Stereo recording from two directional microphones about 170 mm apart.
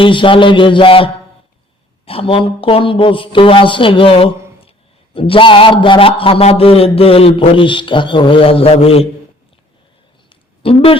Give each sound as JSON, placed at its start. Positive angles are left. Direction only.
{"t": 0.0, "sound": "a sound", "side_deg": 30}
{"t": 2.0, "sound": "a man's voice", "side_deg": 35}
{"t": 10.6, "sound": "speech", "side_deg": 35}